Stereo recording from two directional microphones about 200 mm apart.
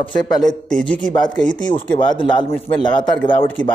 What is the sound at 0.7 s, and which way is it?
Speech, 5° left (ahead or behind).